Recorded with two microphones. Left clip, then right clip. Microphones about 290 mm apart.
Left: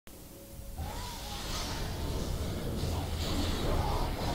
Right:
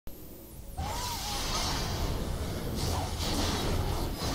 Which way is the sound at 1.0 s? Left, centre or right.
Centre.